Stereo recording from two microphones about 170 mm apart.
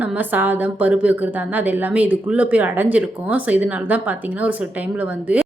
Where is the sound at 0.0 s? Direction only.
10° right (ahead or behind).